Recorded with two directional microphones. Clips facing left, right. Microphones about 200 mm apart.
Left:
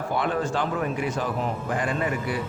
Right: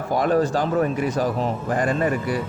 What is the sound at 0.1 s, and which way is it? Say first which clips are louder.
Speech: right 7 dB; 40° right (ahead or behind).